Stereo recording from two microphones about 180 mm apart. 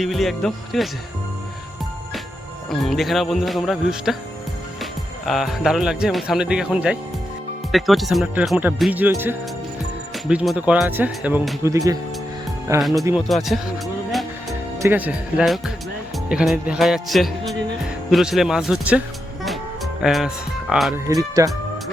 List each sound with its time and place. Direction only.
0.0 s speech: centre (ahead or behind)
2.6 s speech: centre (ahead or behind); by 12.8 s 15° right (ahead or behind)
13.1 s speech: centre (ahead or behind)
14.8 s speech: 10° right (ahead or behind)
19.5 s music: centre (ahead or behind)
20.9 s speech: 20° right (ahead or behind)